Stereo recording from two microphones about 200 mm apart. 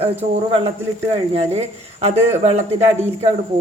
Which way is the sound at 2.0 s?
35° right (ahead or behind).